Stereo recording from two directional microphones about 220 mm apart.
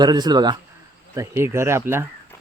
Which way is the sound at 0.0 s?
20° right (ahead or behind).